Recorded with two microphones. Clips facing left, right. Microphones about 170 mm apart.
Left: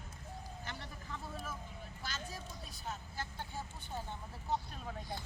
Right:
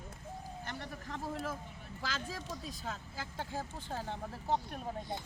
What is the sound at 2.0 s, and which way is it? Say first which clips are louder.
Speech: right 6 dB; 90° right.